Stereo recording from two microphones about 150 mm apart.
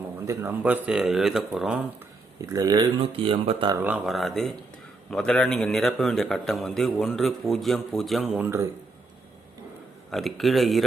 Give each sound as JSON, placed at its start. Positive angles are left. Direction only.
{"t": 0.3, "sound": "a man's voice", "side_deg": -15}
{"t": 2.4, "sound": "speech", "side_deg": -25}
{"t": 3.0, "sound": "speech", "side_deg": -35}
{"t": 3.8, "sound": "a man's voice", "side_deg": -5}
{"t": 8.4, "sound": "speech", "side_deg": -15}
{"t": 10.1, "sound": "a man's voice", "side_deg": 0}